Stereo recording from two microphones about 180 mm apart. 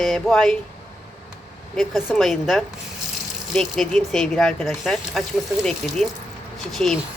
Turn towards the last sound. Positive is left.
turn(degrees=0)  # may be behind; listen again after turning